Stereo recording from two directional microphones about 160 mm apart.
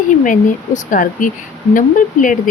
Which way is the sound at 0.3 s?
55° left (ahead or behind).